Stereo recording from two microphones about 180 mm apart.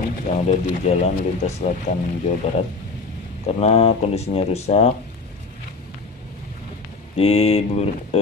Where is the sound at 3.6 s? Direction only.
35° left (ahead or behind).